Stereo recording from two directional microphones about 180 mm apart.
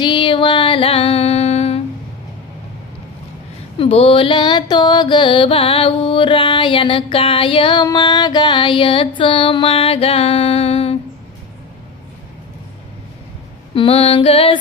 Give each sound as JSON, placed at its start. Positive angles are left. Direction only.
{"t": 0.0, "sound": "music", "side_deg": 25}
{"t": 3.8, "sound": "mantra", "side_deg": 30}
{"t": 13.7, "sound": "female singing", "side_deg": 30}